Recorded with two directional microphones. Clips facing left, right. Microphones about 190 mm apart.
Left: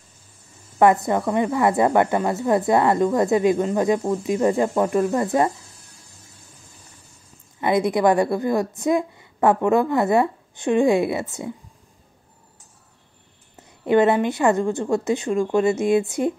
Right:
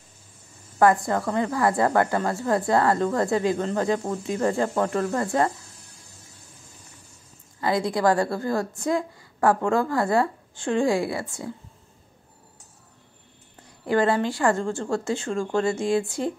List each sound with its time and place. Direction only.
0.7 s a woman's voice: 20° left (ahead or behind)
7.6 s a woman's voice: 20° left (ahead or behind)
13.6 s a woman's voice: 20° left (ahead or behind)